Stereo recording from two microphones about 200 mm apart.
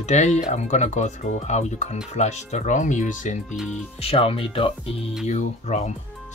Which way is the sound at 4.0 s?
30° left (ahead or behind).